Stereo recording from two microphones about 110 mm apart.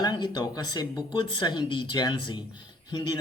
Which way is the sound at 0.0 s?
40° left (ahead or behind).